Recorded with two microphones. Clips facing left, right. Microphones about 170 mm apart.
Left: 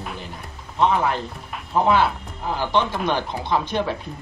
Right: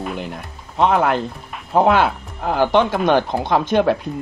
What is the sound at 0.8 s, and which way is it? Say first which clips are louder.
Speech: right 4 dB; 70° right (ahead or behind).